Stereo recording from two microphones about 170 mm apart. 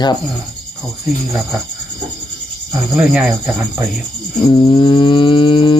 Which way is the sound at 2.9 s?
5° right (ahead or behind).